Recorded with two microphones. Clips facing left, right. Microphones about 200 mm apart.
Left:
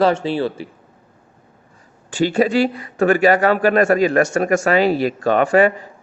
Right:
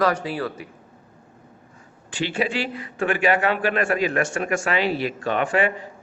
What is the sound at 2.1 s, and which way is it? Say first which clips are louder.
Speech: left 8 dB; 45° left (ahead or behind).